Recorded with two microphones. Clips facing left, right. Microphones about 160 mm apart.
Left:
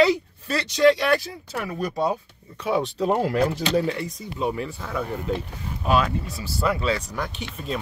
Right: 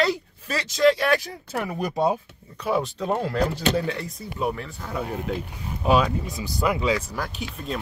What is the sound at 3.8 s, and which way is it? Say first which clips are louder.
Speech: left 2 dB; centre (ahead or behind).